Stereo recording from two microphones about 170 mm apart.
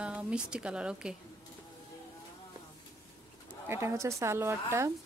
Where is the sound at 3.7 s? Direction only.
15° right (ahead or behind).